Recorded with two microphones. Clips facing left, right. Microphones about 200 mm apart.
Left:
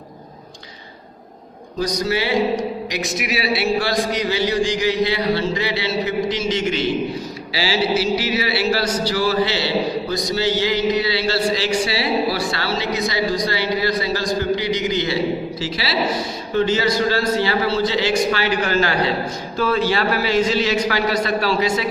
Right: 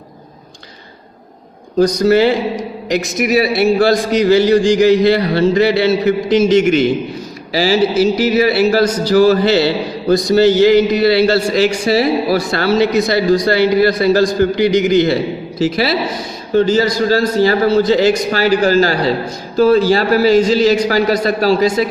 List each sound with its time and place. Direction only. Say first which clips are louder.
1.8 s a man's voice: right 11 dB; 50° right (ahead or behind)
16.6 s a man's voice: right 6 dB; 40° right (ahead or behind)